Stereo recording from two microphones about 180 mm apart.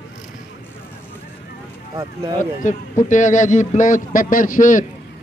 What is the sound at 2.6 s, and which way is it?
A man's voice, 45° left (ahead or behind).